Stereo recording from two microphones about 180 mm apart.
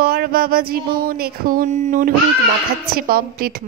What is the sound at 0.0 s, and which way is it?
Music, 60° right (ahead or behind).